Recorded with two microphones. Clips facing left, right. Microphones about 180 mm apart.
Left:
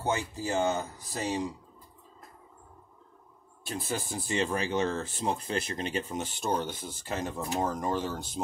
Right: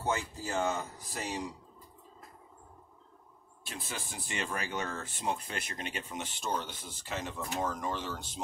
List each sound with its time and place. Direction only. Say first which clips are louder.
0.0 s speech: left 3 dB; 25° left (ahead or behind)
3.6 s speech: left 8 dB; 40° left (ahead or behind)